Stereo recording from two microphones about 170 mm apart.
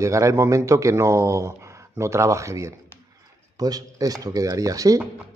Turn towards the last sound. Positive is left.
turn(degrees=-20)  # may be behind; listen again after turning